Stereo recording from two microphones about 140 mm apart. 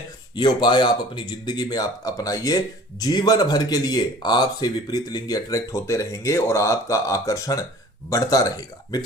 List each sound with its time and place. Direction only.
0.3 s speech: 30° left (ahead or behind)